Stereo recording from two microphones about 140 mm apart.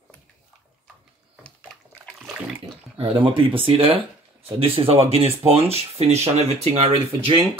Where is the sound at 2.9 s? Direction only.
40° right (ahead or behind).